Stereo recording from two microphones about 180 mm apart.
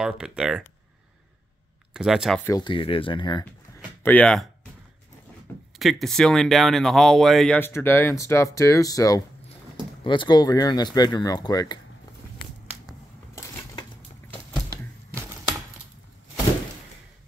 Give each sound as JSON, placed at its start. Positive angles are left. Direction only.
{"t": 0.0, "sound": "speech", "side_deg": -5}
{"t": 2.0, "sound": "speech", "side_deg": 0}
{"t": 2.4, "sound": "speech", "side_deg": 20}
{"t": 4.0, "sound": "speech", "side_deg": 10}
{"t": 5.8, "sound": "speech", "side_deg": 0}